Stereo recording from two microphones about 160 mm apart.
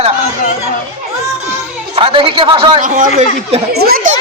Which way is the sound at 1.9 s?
35° right (ahead or behind).